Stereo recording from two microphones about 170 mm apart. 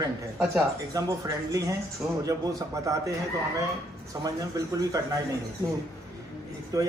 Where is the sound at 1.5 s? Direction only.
20° right (ahead or behind).